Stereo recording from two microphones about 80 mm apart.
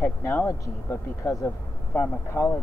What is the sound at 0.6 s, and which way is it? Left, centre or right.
Speech, left.